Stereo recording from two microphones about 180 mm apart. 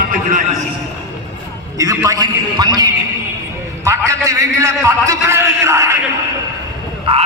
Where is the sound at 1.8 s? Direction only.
20° right (ahead or behind).